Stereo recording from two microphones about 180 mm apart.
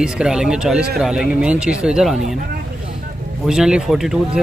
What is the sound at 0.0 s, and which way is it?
Speech, 5° right (ahead or behind).